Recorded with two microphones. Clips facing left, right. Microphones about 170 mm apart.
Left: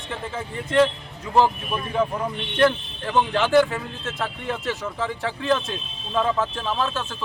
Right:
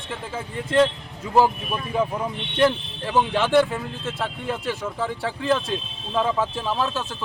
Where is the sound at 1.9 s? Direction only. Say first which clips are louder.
Even; 10° right (ahead or behind).